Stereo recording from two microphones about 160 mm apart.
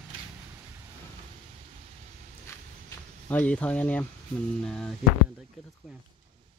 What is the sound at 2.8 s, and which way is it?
Speech, 10° left (ahead or behind).